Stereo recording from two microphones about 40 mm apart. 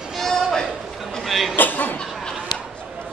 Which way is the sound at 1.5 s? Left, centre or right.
Left.